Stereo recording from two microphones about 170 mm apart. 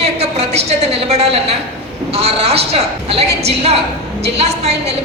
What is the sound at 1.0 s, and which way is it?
A woman's voice, 40° right (ahead or behind).